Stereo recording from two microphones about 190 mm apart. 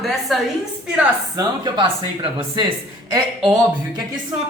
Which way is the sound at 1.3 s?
25° right (ahead or behind).